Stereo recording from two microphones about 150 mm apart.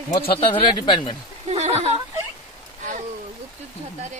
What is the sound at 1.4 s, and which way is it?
Speech, 45° right (ahead or behind).